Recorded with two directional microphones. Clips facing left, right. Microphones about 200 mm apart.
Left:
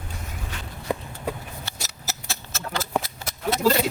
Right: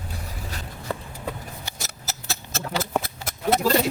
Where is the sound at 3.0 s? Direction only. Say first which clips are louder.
Right 1 dB; 55° right (ahead or behind).